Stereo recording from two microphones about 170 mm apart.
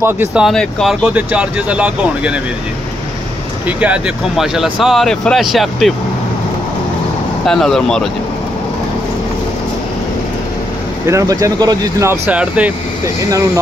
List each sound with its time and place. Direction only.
0.0 s speech: 10° right (ahead or behind)
3.6 s speech: 10° right (ahead or behind)
7.4 s speech: 5° left (ahead or behind)
11.1 s speech: 20° right (ahead or behind)